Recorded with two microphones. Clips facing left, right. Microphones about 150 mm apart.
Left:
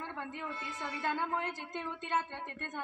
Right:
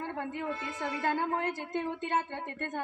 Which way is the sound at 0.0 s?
45° right (ahead or behind).